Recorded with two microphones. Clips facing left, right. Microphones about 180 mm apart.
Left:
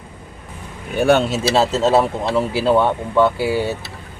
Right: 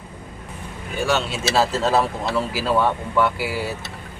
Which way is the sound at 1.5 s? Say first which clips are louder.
Left 3 dB; 25° left (ahead or behind).